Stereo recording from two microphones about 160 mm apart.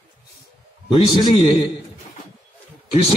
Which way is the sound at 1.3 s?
30° left (ahead or behind).